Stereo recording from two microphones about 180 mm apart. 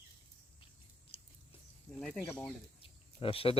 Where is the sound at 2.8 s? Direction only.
30° left (ahead or behind).